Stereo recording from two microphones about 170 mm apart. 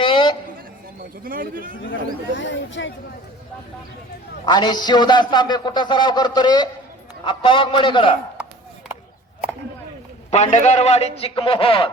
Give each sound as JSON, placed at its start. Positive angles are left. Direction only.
{"t": 0.0, "sound": "a sound", "side_deg": 30}
{"t": 1.2, "sound": "a man's voice", "side_deg": -55}
{"t": 2.4, "sound": "speech", "side_deg": 90}
{"t": 4.4, "sound": "a man's voice", "side_deg": 25}
{"t": 10.3, "sound": "a man's voice", "side_deg": 40}